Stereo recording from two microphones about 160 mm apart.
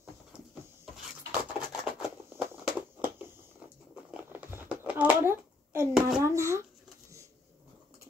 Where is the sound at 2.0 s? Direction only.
5° right (ahead or behind).